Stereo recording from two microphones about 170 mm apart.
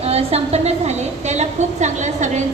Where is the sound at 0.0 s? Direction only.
35° right (ahead or behind).